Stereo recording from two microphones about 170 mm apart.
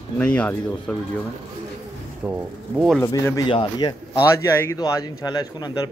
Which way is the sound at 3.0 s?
20° left (ahead or behind).